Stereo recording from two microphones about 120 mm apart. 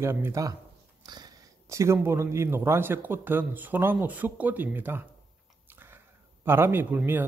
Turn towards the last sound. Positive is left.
turn(degrees=-15)  # may be behind; listen again after turning